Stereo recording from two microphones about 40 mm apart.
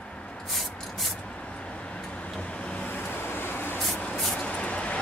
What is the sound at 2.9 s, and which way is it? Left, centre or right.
Vehicle, left.